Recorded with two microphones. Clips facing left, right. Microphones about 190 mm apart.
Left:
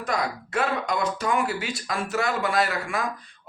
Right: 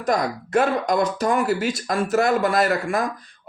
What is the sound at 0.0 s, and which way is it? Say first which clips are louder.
Speech: right 5 dB; 45° right (ahead or behind).